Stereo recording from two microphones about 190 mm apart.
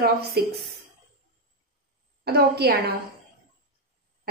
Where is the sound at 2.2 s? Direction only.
55° right (ahead or behind).